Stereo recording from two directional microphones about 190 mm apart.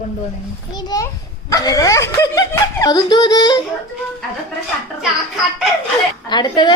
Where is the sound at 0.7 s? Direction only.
20° left (ahead or behind).